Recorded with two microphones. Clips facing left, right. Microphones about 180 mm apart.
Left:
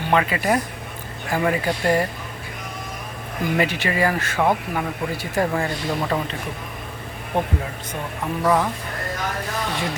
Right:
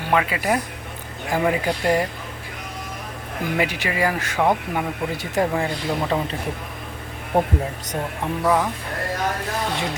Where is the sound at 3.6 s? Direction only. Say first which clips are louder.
Left 1 dB; 10° right (ahead or behind).